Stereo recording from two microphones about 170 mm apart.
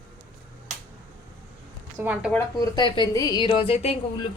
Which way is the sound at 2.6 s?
25° left (ahead or behind).